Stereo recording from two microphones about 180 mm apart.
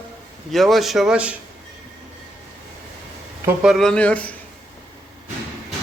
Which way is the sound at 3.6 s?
Centre (ahead or behind).